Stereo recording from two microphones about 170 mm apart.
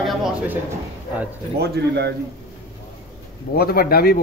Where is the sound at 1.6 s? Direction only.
75° right (ahead or behind).